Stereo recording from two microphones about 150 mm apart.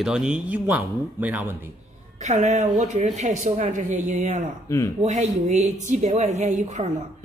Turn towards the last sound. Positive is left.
turn(degrees=-50)  # may be behind; listen again after turning